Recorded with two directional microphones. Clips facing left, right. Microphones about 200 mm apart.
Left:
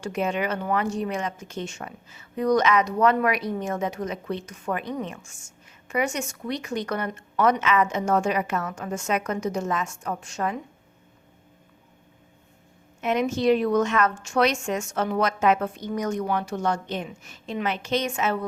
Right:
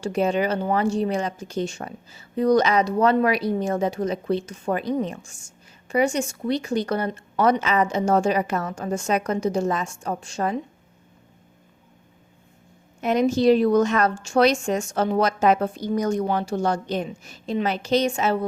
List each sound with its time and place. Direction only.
0.0 s a woman's voice: 35° right (ahead or behind)
13.0 s a woman's voice: 35° right (ahead or behind)